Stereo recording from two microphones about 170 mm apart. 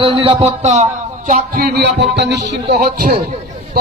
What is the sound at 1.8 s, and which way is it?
Music, 90° right.